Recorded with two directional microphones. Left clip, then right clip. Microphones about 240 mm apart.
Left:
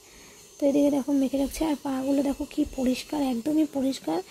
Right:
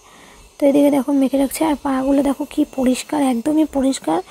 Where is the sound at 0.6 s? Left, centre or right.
Centre.